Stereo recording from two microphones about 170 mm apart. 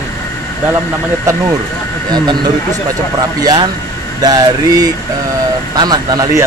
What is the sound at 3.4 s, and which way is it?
Speech, 25° right (ahead or behind).